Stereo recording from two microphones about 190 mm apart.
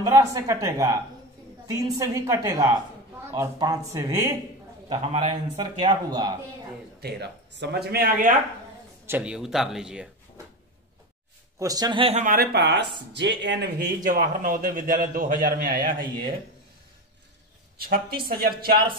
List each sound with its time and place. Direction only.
0.0 s speech: 15° right (ahead or behind)
2.0 s speech: 15° right (ahead or behind)
4.8 s speech: 30° right (ahead or behind)
7.0 s speech: 60° right (ahead or behind)
9.0 s speech: 10° right (ahead or behind)
11.6 s speech: 20° right (ahead or behind); by 12.4 s 40° right (ahead or behind)
12.5 s speech: 65° right (ahead or behind); by 16.0 s 45° right (ahead or behind)
17.7 s speech: 50° right (ahead or behind)